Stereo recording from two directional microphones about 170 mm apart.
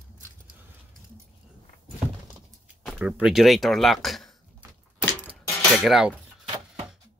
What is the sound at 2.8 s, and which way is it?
Speech, 5° right (ahead or behind).